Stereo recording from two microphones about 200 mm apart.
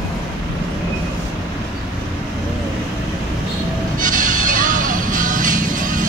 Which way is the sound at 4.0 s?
40° right (ahead or behind).